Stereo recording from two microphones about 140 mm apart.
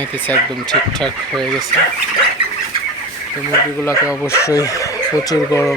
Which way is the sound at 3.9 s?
20° left (ahead or behind).